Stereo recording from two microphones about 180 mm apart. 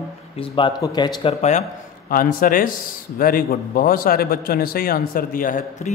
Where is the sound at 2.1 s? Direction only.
50° left (ahead or behind).